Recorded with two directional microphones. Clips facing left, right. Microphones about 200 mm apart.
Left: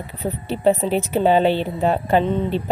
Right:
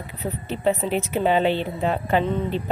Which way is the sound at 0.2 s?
35° left (ahead or behind).